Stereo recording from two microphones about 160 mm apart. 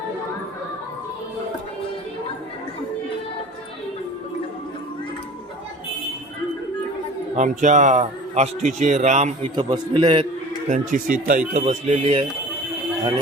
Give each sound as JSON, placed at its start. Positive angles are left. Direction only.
{"t": 7.3, "sound": "a man's voice", "side_deg": -50}
{"t": 9.6, "sound": "a man's voice", "side_deg": -30}
{"t": 10.7, "sound": "speech", "side_deg": -60}
{"t": 11.6, "sound": "a man's voice", "side_deg": -45}